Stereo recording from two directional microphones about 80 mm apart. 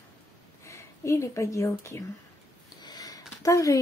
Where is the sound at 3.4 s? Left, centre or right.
Left.